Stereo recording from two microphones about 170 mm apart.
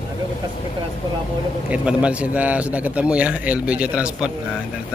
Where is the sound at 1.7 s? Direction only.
5° right (ahead or behind).